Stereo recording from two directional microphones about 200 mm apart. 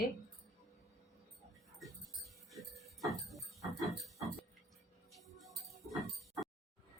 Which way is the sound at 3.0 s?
Centre (ahead or behind).